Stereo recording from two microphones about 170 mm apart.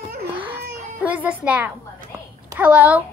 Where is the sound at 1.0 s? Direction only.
5° right (ahead or behind).